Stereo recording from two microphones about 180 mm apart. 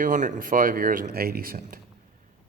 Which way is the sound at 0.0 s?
45° right (ahead or behind).